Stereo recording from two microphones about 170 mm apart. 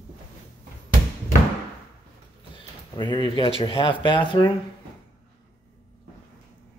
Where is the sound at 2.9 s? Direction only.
25° left (ahead or behind).